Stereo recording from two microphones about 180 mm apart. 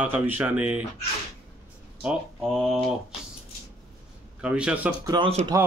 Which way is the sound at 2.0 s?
5° right (ahead or behind).